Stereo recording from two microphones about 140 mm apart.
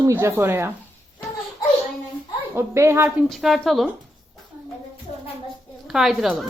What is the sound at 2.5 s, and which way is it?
Speech, 20° right (ahead or behind).